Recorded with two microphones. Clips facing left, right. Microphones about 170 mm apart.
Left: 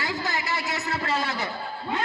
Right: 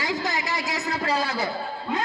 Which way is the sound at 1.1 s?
35° right (ahead or behind).